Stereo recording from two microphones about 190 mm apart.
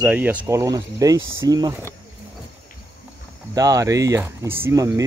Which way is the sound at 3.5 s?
20° right (ahead or behind).